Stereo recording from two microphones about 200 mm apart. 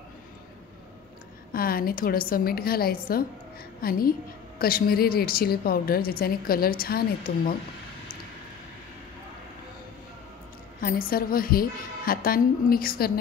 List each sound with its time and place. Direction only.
1.5 s a woman's voice: 45° left (ahead or behind)
10.8 s a woman's voice: 45° left (ahead or behind)